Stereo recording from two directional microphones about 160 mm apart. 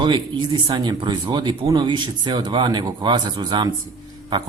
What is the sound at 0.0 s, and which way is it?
Speech, 30° right (ahead or behind).